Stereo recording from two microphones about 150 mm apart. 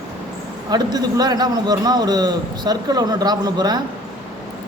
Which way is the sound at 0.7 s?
25° right (ahead or behind).